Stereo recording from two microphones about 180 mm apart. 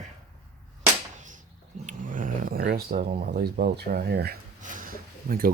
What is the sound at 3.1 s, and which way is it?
Speech, 55° right (ahead or behind).